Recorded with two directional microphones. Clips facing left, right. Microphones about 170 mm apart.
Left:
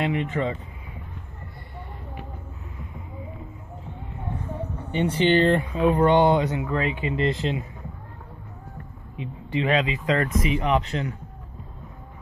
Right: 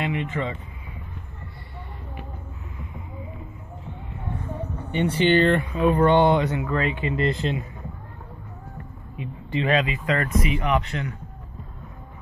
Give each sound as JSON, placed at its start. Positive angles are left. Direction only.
{"t": 0.0, "sound": "speech", "side_deg": 40}
{"t": 4.9, "sound": "speech", "side_deg": 30}
{"t": 5.9, "sound": "speech", "side_deg": 15}
{"t": 9.1, "sound": "speech", "side_deg": 20}